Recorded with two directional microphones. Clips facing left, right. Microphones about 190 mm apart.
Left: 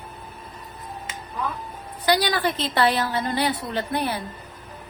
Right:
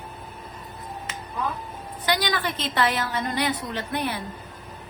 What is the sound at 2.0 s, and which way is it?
A woman's voice, 35° left (ahead or behind).